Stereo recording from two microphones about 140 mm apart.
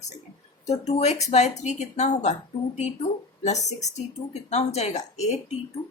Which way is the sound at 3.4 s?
55° left (ahead or behind).